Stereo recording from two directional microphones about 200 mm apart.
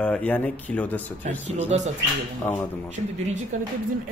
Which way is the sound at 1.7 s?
30° right (ahead or behind).